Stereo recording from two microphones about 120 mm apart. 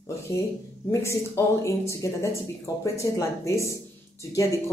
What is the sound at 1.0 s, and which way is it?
Speech, 25° left (ahead or behind).